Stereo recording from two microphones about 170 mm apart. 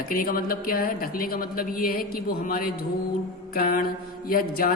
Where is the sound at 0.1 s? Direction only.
55° left (ahead or behind).